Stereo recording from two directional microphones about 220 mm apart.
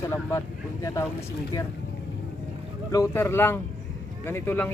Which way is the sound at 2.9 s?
15° left (ahead or behind).